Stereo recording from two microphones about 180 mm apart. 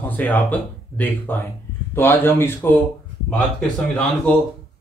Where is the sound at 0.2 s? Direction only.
10° left (ahead or behind).